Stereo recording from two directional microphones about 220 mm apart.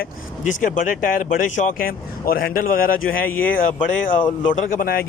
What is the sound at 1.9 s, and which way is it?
Speech, 40° left (ahead or behind).